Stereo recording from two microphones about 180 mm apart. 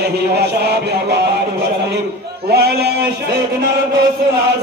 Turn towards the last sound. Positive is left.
turn(degrees=-65)  # may be behind; listen again after turning